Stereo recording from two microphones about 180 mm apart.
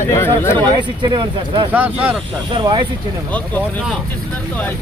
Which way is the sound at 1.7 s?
10° right (ahead or behind).